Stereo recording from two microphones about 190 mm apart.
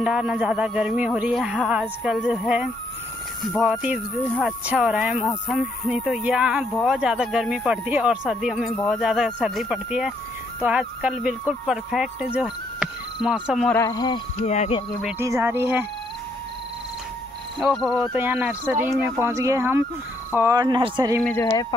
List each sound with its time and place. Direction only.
0.0 s speech: 5° right (ahead or behind)
13.7 s speech: 20° left (ahead or behind)
14.4 s speech: 35° left (ahead or behind)
15.0 s speech: 5° right (ahead or behind)
17.6 s speech: centre (ahead or behind)
18.1 s speech: 10° right (ahead or behind)
21.2 s speech: 10° left (ahead or behind)